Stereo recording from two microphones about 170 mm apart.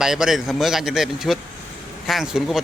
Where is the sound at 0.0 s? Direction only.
5° right (ahead or behind).